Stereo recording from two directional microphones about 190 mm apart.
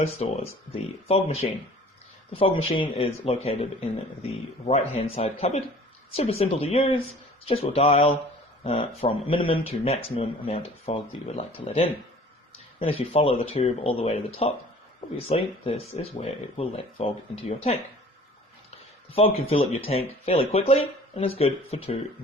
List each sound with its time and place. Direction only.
0.0 s speech: 30° left (ahead or behind)
18.7 s speech: 30° left (ahead or behind)